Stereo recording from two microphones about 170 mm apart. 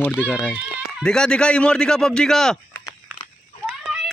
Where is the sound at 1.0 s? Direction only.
5° left (ahead or behind).